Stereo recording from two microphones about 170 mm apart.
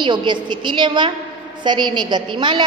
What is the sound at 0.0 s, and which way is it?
A woman's voice, 25° right (ahead or behind).